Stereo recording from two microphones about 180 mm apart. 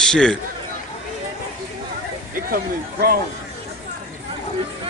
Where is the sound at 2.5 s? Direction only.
55° right (ahead or behind).